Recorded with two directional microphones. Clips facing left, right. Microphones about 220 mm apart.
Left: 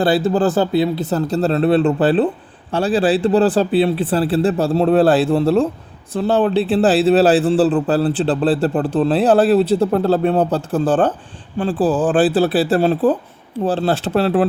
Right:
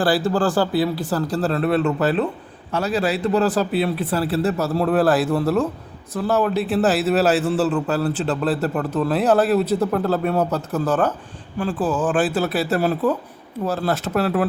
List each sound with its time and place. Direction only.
0.0 s a man's voice: 20° left (ahead or behind)